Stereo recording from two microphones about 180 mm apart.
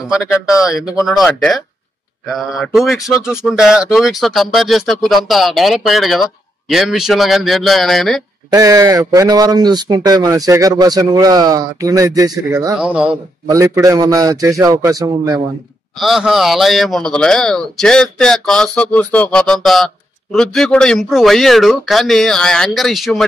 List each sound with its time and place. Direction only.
0.1 s a man's voice: 5° right (ahead or behind)
8.5 s a man's voice: 20° right (ahead or behind)
13.5 s a man's voice: 20° right (ahead or behind)
16.0 s a man's voice: centre (ahead or behind)